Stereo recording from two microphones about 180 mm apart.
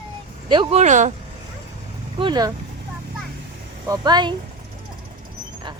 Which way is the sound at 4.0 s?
25° right (ahead or behind).